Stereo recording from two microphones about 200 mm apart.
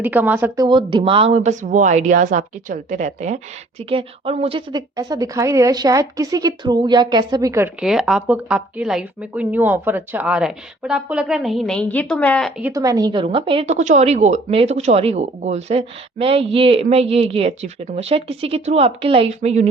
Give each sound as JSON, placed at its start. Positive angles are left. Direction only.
{"t": 0.0, "sound": "a woman's voice", "side_deg": -10}
{"t": 0.6, "sound": "a woman's voice", "side_deg": -25}
{"t": 12.7, "sound": "a woman's voice", "side_deg": -15}